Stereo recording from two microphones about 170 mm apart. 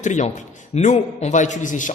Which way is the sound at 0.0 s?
45° left (ahead or behind).